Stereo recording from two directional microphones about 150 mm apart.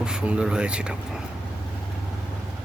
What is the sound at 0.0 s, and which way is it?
Speech, 5° right (ahead or behind).